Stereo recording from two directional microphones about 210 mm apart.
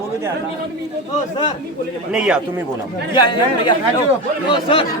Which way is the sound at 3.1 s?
20° left (ahead or behind).